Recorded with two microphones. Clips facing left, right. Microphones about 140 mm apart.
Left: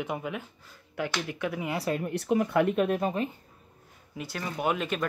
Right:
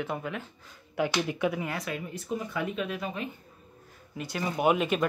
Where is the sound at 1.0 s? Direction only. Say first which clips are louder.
Right 4 dB; 15° right (ahead or behind).